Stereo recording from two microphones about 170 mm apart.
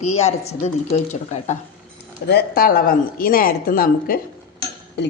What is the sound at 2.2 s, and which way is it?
Speech, 65° left (ahead or behind).